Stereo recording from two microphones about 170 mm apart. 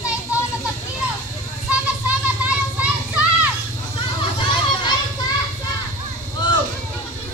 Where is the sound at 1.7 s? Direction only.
5° right (ahead or behind).